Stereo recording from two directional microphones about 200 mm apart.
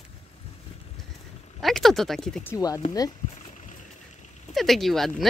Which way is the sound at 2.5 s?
15° left (ahead or behind).